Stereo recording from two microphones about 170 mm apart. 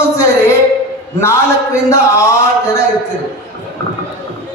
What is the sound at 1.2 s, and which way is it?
Speech, 15° left (ahead or behind).